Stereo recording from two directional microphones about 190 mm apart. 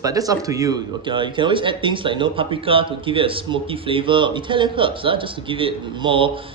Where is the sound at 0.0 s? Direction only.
20° right (ahead or behind).